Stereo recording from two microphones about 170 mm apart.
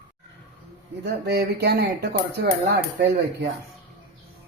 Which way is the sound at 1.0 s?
75° right (ahead or behind).